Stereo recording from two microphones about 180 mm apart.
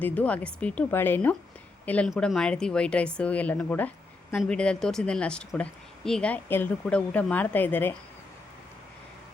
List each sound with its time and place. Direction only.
0.0 s a woman's voice: 10° left (ahead or behind)